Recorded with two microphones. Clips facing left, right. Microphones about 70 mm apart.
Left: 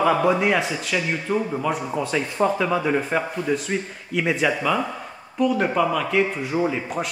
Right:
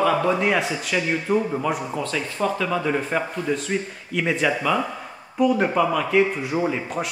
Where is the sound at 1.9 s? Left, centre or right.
Centre.